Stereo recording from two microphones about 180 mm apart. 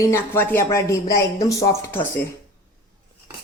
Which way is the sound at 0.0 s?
15° left (ahead or behind).